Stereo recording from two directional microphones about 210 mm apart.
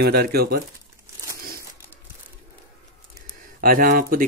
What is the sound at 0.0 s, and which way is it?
Speech, 50° right (ahead or behind).